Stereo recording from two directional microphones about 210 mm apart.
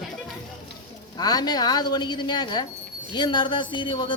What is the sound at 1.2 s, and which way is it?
A woman's voice, 20° left (ahead or behind).